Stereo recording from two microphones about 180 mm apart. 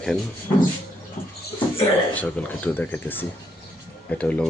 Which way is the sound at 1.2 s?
15° left (ahead or behind).